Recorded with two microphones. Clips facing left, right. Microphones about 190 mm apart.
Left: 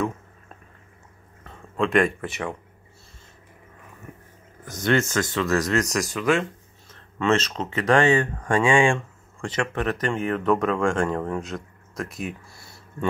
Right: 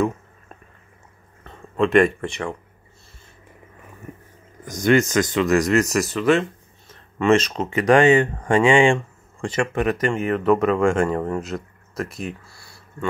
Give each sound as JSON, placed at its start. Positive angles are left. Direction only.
{"t": 1.4, "sound": "speech", "side_deg": 0}
{"t": 4.6, "sound": "speech", "side_deg": -15}
{"t": 12.4, "sound": "a sound", "side_deg": 20}